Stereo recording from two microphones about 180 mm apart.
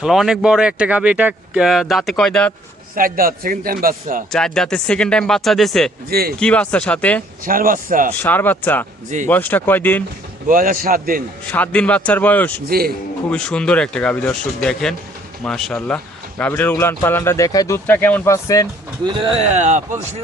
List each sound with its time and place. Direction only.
0.0 s speech: centre (ahead or behind)
2.9 s a man's voice: 50° right (ahead or behind)
4.3 s speech: 5° left (ahead or behind)
6.1 s speech: 60° right (ahead or behind)
6.4 s speech: 5° left (ahead or behind)
7.4 s a man's voice: 50° right (ahead or behind)
8.1 s speech: 10° left (ahead or behind)
10.4 s a man's voice: 50° right (ahead or behind)
11.4 s speech: 10° left (ahead or behind)
12.6 s speech: 55° right (ahead or behind)
13.3 s speech: 5° left (ahead or behind)
19.0 s speech: 25° right (ahead or behind)
19.4 s speech: 40° right (ahead or behind)